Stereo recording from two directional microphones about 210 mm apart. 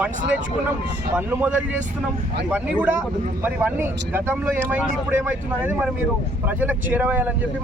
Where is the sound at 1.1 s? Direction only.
10° right (ahead or behind).